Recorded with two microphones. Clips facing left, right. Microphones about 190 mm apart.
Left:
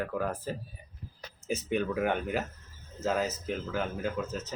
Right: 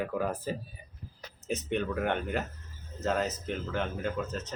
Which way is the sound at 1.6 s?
5° left (ahead or behind).